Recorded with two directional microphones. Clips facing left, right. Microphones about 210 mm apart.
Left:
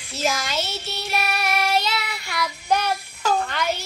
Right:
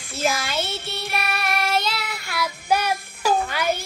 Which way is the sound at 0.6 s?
55° right (ahead or behind).